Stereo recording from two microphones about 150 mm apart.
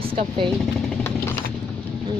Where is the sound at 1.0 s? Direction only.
15° left (ahead or behind).